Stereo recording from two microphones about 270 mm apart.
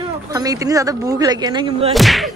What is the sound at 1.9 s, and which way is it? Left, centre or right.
Speech, centre.